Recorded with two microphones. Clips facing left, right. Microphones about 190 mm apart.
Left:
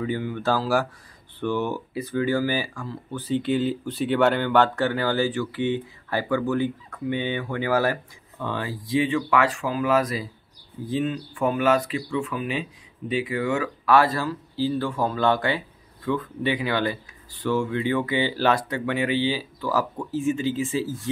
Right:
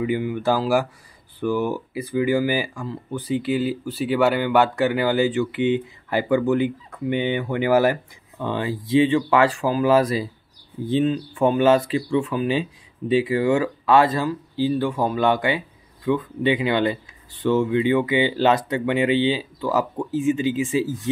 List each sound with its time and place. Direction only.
0.0 s speech: 15° right (ahead or behind)